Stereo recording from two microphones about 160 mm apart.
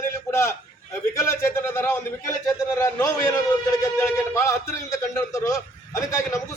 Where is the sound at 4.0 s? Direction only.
15° left (ahead or behind).